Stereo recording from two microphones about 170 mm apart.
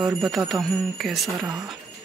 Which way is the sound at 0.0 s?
Centre (ahead or behind).